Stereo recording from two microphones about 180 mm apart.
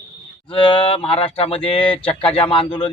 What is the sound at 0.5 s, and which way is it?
Speech, 30° left (ahead or behind).